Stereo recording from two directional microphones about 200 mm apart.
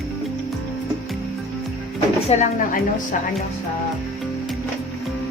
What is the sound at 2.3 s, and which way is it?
Speech, 40° left (ahead or behind).